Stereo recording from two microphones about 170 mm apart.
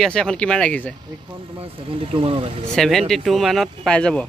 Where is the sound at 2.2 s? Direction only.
30° right (ahead or behind).